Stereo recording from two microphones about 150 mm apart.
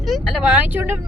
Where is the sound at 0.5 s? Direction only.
10° right (ahead or behind).